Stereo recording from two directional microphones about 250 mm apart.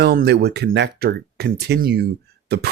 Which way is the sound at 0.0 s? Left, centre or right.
Right.